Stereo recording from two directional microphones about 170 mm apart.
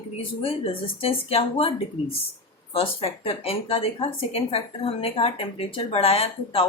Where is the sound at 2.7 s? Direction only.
35° left (ahead or behind).